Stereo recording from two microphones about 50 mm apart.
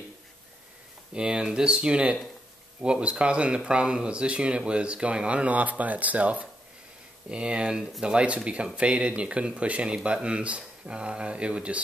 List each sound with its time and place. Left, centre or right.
1.1 s speech: centre